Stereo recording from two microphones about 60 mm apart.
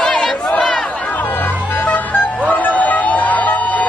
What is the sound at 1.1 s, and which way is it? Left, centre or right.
Music, left.